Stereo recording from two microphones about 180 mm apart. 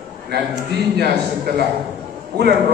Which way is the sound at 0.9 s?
65° right (ahead or behind).